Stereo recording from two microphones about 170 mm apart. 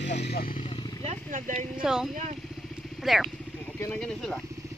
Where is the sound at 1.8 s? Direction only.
5° right (ahead or behind).